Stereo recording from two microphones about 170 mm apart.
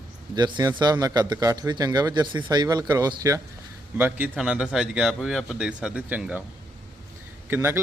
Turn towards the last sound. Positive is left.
turn(degrees=-15)  # may be behind; listen again after turning